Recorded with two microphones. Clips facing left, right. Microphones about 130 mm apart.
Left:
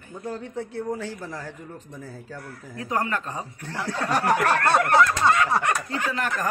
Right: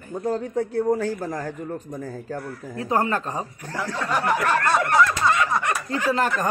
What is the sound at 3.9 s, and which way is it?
Speech, 35° left (ahead or behind).